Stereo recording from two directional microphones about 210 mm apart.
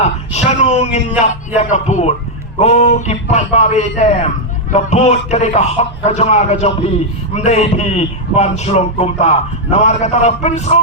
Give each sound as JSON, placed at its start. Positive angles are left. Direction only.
{"t": 0.3, "sound": "a man's voice", "side_deg": 30}